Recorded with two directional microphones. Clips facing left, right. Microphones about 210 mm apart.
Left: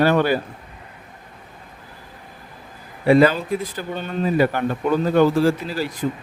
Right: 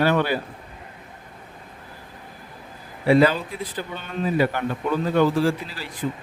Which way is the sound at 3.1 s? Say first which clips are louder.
Left 3 dB; 50° left (ahead or behind).